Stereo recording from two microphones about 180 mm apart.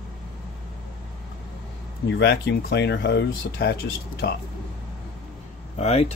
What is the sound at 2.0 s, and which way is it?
Speech, 70° left (ahead or behind).